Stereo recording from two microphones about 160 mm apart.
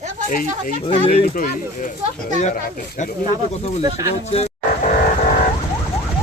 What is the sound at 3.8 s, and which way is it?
Speech, 20° right (ahead or behind).